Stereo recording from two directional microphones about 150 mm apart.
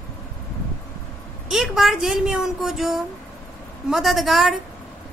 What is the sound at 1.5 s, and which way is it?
Speech, centre (ahead or behind).